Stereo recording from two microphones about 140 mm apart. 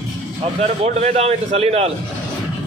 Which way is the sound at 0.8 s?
50° right (ahead or behind).